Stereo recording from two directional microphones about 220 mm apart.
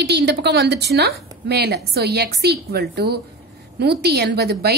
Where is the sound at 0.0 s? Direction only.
50° right (ahead or behind).